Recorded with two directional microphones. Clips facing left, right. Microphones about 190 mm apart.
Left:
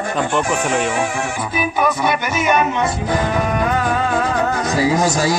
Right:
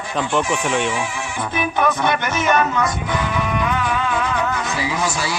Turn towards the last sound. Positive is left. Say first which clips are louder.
# left 7 dB
turn(degrees=40)  # may be behind; listen again after turning